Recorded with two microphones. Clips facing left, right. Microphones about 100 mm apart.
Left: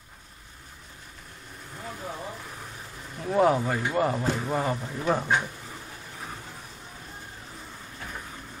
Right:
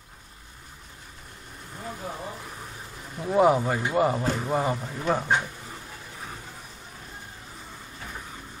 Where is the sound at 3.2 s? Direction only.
10° right (ahead or behind).